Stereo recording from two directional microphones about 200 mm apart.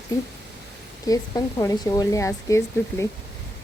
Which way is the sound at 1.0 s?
20° left (ahead or behind).